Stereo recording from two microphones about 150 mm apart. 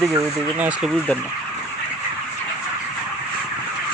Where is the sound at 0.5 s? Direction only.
10° right (ahead or behind).